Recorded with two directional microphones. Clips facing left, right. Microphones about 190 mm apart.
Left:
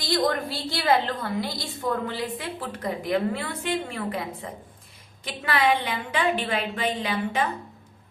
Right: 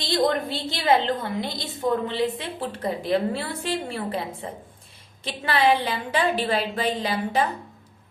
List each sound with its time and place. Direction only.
0.0 s a woman's voice: 25° right (ahead or behind)